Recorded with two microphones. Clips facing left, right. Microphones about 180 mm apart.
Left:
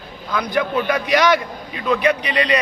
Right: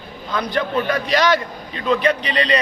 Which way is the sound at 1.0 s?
15° left (ahead or behind).